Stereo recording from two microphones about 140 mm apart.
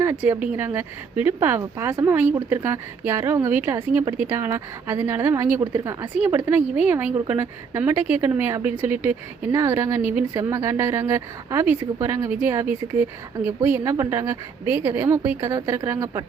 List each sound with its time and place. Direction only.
0.4 s a woman's voice: 15° right (ahead or behind)